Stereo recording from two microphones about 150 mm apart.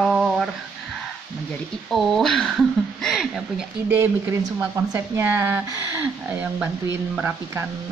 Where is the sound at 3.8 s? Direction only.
15° right (ahead or behind).